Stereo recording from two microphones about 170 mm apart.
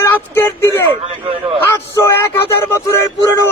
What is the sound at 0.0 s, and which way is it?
Speech, 15° left (ahead or behind).